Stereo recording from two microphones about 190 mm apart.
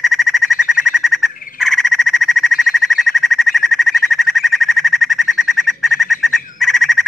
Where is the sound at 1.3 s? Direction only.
45° left (ahead or behind).